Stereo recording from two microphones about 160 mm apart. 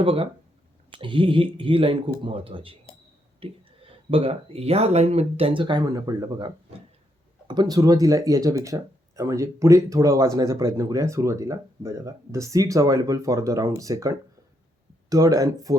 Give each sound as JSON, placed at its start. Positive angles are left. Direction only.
{"t": 0.0, "sound": "speech", "side_deg": -35}